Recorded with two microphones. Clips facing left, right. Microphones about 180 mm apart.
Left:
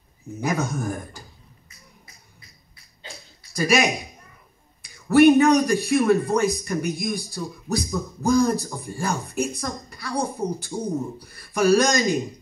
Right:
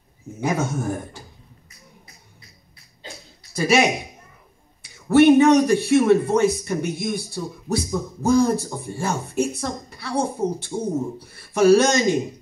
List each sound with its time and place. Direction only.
0.4 s a man's voice: 25° right (ahead or behind)
3.5 s a man's voice: 25° right (ahead or behind)